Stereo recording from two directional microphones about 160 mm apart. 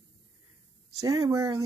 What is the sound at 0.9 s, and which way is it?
Speech, 20° right (ahead or behind).